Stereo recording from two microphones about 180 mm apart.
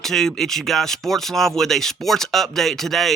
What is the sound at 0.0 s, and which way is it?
Speech, 5° left (ahead or behind).